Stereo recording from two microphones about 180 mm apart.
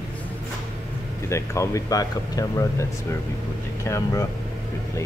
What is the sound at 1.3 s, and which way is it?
Speech, 15° left (ahead or behind).